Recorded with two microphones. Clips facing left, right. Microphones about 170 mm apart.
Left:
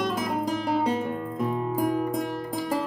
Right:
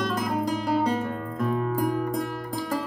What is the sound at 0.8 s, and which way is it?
Music, 20° left (ahead or behind).